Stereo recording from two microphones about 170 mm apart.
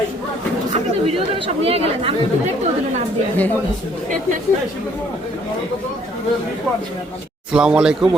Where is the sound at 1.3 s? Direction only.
35° right (ahead or behind).